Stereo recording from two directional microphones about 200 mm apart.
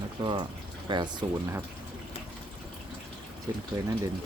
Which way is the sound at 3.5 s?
15° right (ahead or behind).